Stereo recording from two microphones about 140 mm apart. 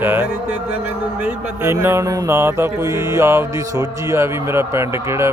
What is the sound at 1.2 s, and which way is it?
Music, 15° right (ahead or behind).